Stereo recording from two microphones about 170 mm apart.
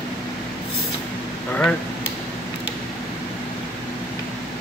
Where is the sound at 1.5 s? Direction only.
5° left (ahead or behind).